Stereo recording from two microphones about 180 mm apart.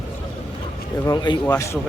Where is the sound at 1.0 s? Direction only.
25° left (ahead or behind).